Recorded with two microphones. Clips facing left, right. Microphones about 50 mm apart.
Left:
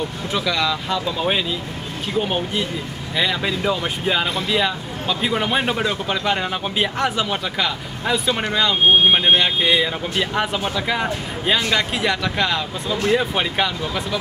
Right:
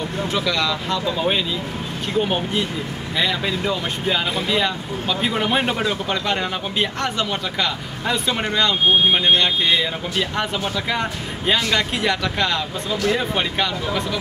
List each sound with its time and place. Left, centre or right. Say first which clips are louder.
0.3 s a man's voice: left 1 dB; centre